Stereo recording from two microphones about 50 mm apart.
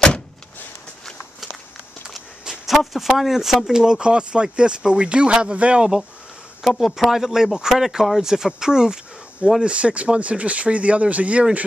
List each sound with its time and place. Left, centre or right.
2.1 s a sound: centre
2.7 s speech: centre; by 5.9 s right
6.6 s speech: centre
7.0 s speech: centre; by 11.4 s right